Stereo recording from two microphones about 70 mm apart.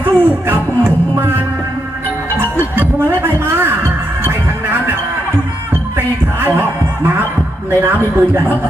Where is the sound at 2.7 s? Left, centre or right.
Right.